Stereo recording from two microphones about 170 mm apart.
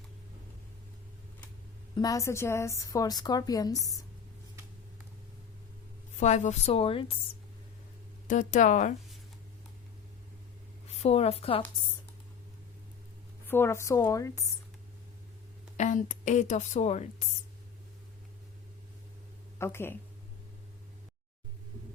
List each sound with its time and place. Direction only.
2.0 s a woman's voice: 20° left (ahead or behind)
6.1 s a woman's voice: 45° left (ahead or behind)
8.3 s a woman's voice: 50° left (ahead or behind)
10.8 s speech: 40° left (ahead or behind)
13.5 s a woman's voice: 15° left (ahead or behind)
15.8 s a woman's voice: 45° left (ahead or behind)
19.5 s speech: 15° left (ahead or behind)